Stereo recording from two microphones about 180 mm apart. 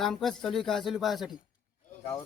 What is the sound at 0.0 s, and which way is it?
Speech, centre (ahead or behind).